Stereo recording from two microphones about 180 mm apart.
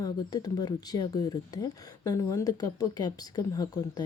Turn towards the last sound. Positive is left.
turn(degrees=20)  # may be behind; listen again after turning